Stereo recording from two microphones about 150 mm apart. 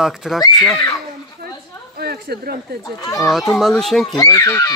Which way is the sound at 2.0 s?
90° right.